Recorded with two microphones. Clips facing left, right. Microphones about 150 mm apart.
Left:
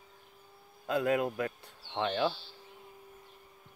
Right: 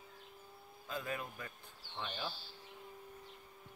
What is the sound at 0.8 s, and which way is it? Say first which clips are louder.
Speech: left 13 dB; 80° left.